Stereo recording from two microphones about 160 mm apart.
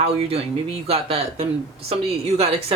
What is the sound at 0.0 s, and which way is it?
A woman's voice, 40° right (ahead or behind).